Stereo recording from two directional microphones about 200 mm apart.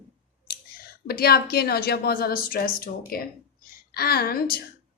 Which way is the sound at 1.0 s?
50° left (ahead or behind).